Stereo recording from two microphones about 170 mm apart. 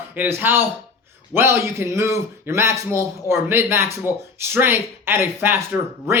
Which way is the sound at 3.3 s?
15° right (ahead or behind).